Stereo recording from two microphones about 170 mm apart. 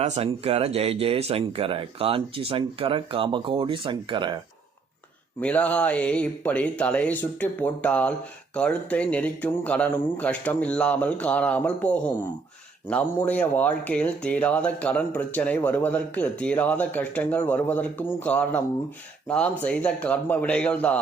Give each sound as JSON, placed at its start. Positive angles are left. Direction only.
{"t": 0.0, "sound": "speech", "side_deg": -35}
{"t": 5.4, "sound": "speech", "side_deg": 5}